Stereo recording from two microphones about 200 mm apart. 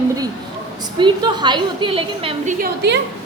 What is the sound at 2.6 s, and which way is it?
Speech, 55° right (ahead or behind).